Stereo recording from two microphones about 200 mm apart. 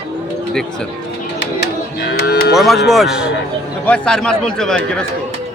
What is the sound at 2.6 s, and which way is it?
Speech, centre (ahead or behind).